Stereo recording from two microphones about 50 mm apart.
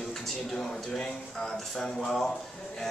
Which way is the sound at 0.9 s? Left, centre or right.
Centre.